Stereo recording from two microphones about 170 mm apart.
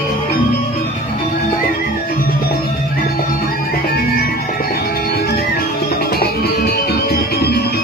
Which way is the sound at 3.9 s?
60° left (ahead or behind).